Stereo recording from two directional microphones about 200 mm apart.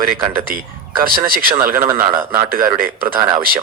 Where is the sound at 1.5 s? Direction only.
10° right (ahead or behind).